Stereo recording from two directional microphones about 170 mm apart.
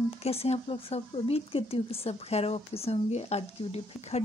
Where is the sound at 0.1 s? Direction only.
35° left (ahead or behind).